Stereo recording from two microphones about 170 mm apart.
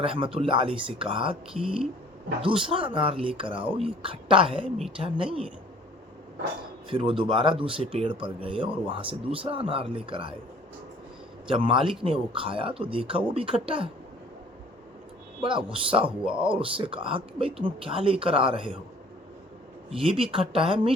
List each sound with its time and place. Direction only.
0.0 s speech: 30° right (ahead or behind)
2.6 s speech: 30° right (ahead or behind)
6.9 s speech: 30° right (ahead or behind)
11.4 s speech: 30° right (ahead or behind)
15.4 s speech: 30° right (ahead or behind)
20.0 s speech: 30° right (ahead or behind)